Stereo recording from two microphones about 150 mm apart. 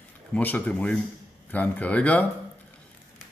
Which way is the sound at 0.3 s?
10° left (ahead or behind).